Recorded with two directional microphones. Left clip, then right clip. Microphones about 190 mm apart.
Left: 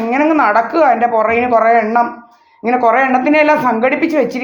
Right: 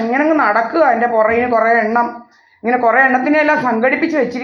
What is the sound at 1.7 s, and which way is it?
A woman's voice, 30° left (ahead or behind).